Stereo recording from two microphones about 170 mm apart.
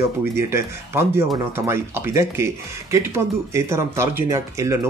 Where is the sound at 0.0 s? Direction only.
15° right (ahead or behind).